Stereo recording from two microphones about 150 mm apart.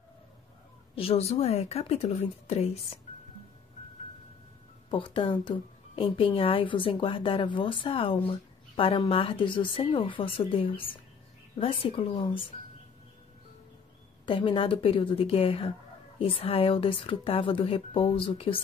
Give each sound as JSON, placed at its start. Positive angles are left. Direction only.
{"t": 0.9, "sound": "a woman's voice", "side_deg": 40}
{"t": 4.9, "sound": "speech", "side_deg": 35}
{"t": 14.2, "sound": "speech", "side_deg": 35}